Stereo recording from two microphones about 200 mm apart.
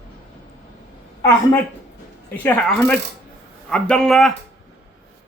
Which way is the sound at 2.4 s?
5° left (ahead or behind).